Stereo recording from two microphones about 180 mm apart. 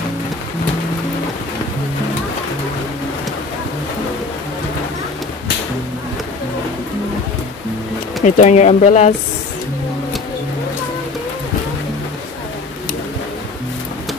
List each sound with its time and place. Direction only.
8.2 s speech: 40° left (ahead or behind)